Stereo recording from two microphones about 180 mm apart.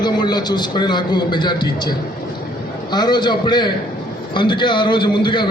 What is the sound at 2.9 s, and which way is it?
A man's voice, 25° left (ahead or behind).